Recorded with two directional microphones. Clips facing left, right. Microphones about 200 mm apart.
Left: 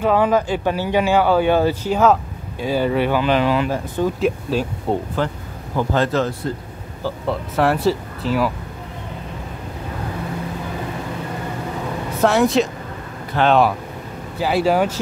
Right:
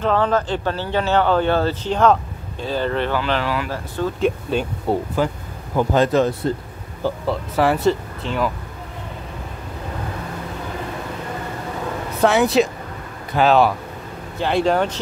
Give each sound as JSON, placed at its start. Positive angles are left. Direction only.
{"t": 0.0, "sound": "speech", "side_deg": 10}
{"t": 4.2, "sound": "a man's voice", "side_deg": 0}
{"t": 7.2, "sound": "speech", "side_deg": 0}
{"t": 12.2, "sound": "speech", "side_deg": 0}